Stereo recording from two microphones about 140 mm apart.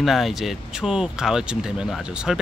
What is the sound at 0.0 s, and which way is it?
Speech, centre (ahead or behind).